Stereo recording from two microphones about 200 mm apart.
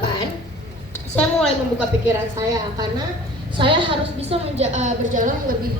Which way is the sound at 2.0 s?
15° right (ahead or behind).